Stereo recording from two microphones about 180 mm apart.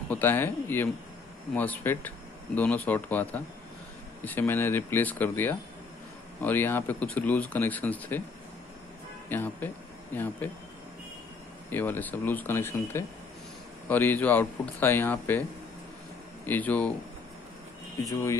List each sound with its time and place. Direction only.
0.1 s speech: 10° left (ahead or behind)
9.3 s speech: 10° left (ahead or behind)
11.7 s speech: 10° left (ahead or behind)
16.4 s speech: 10° left (ahead or behind)
18.0 s speech: 20° left (ahead or behind)